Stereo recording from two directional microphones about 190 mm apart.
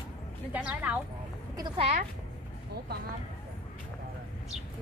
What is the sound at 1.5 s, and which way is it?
Speech, 25° right (ahead or behind).